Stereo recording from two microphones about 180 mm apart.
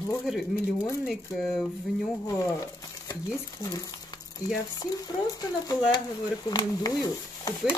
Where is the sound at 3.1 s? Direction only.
20° left (ahead or behind).